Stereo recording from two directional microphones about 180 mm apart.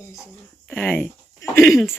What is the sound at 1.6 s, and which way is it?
Speech, centre (ahead or behind).